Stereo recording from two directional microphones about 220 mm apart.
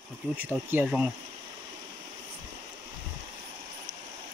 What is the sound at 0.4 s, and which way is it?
Speech, 10° right (ahead or behind).